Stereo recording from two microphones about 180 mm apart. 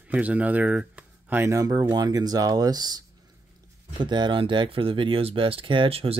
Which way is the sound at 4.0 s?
25° right (ahead or behind).